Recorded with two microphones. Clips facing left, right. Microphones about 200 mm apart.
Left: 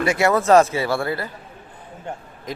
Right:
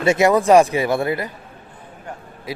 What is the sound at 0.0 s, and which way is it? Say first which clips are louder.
A man's voice: right 3 dB; 20° right (ahead or behind).